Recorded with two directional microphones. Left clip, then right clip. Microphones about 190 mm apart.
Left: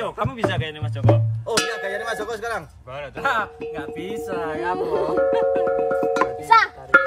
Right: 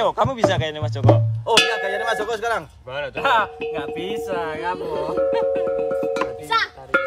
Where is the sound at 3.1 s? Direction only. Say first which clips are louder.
Right 4 dB; 35° right (ahead or behind).